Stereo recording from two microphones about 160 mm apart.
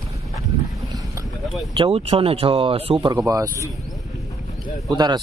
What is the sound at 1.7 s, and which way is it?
Speech, 35° right (ahead or behind).